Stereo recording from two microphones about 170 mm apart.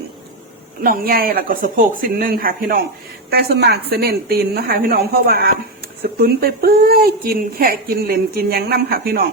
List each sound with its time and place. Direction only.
0.8 s speech: 60° right (ahead or behind)